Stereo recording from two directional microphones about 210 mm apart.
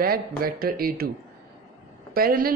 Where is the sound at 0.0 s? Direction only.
45° right (ahead or behind).